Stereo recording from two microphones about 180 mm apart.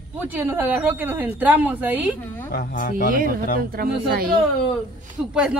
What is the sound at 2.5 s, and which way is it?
Speech, 50° left (ahead or behind).